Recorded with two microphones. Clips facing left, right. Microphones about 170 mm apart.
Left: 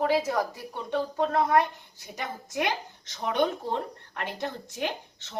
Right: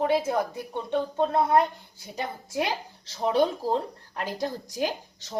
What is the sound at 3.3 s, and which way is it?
Speech, 35° right (ahead or behind).